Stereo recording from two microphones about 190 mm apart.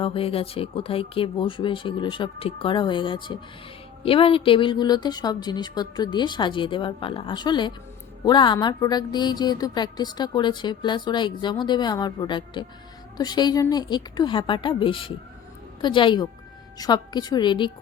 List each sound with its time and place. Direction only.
0.0 s speech: 30° left (ahead or behind)